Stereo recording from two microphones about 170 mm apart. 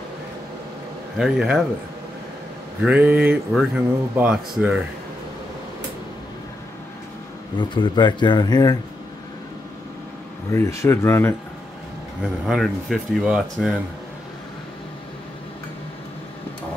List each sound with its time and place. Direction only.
1.1 s speech: 5° right (ahead or behind)
2.8 s speech: 10° right (ahead or behind)
7.5 s speech: 25° left (ahead or behind)
10.5 s speech: 15° left (ahead or behind)
12.2 s speech: centre (ahead or behind)